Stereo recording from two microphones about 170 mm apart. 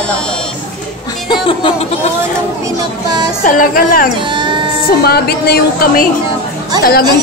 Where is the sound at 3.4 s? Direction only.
55° left (ahead or behind).